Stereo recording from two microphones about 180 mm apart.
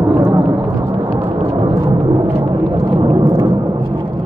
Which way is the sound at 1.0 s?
25° right (ahead or behind).